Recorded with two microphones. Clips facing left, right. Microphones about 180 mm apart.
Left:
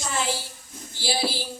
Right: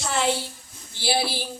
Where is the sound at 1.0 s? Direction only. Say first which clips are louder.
Right 2 dB; 60° right (ahead or behind).